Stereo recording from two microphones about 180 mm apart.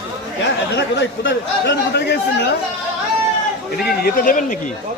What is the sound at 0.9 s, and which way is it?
Speech, 80° left.